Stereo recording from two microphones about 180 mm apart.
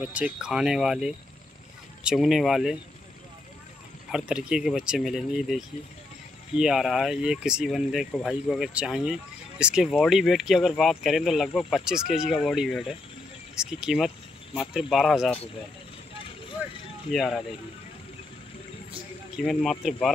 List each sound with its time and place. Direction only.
0.0 s speech: 5° right (ahead or behind)
4.1 s speech: 5° right (ahead or behind)
17.1 s speech: centre (ahead or behind)
19.5 s speech: centre (ahead or behind)